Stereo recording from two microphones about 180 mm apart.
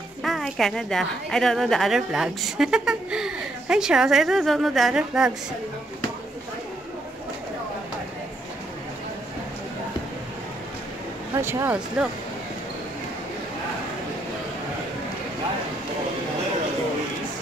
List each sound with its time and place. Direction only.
0.2 s a woman's voice: centre (ahead or behind)
11.3 s speech: 15° right (ahead or behind)